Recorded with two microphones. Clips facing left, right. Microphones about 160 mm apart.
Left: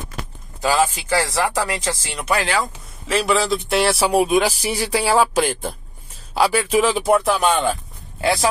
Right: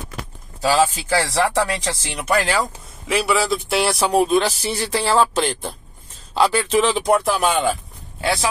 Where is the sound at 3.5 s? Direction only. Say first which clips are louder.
Left 1 dB; centre (ahead or behind).